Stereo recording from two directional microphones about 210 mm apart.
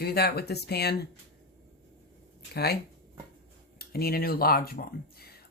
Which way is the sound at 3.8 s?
45° left (ahead or behind).